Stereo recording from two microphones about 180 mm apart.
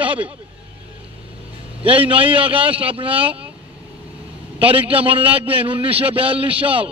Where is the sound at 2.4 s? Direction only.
30° right (ahead or behind).